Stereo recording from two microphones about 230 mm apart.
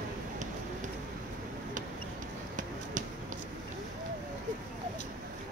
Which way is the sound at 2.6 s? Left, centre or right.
Right.